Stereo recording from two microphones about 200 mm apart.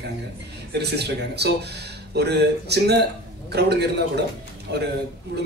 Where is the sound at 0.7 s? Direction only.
55° right (ahead or behind).